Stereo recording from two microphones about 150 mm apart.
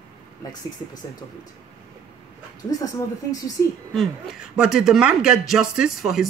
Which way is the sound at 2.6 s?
25° left (ahead or behind).